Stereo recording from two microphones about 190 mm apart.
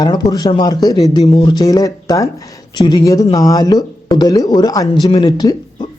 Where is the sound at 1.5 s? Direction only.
20° left (ahead or behind).